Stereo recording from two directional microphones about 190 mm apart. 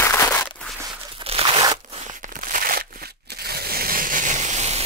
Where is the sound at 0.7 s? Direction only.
20° right (ahead or behind).